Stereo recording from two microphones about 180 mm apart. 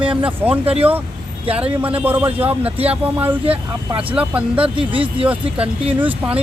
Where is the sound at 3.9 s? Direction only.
30° right (ahead or behind).